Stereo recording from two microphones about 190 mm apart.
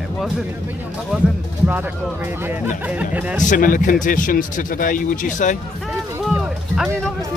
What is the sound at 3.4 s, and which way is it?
Speech, 45° left (ahead or behind).